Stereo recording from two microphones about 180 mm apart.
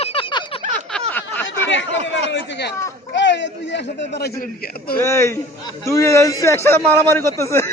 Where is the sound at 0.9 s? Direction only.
10° left (ahead or behind).